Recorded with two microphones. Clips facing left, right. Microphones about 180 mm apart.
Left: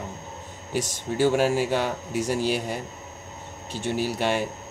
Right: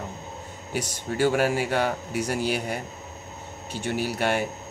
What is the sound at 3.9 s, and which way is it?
Speech, 55° right (ahead or behind).